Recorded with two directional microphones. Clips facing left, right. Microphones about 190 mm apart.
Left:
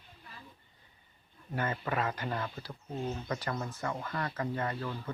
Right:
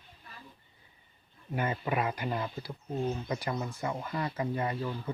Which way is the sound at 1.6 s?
15° right (ahead or behind).